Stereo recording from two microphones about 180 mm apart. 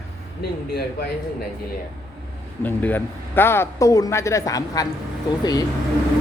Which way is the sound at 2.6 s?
10° left (ahead or behind).